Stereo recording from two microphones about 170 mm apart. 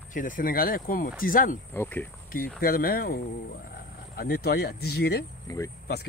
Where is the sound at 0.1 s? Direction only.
55° left (ahead or behind).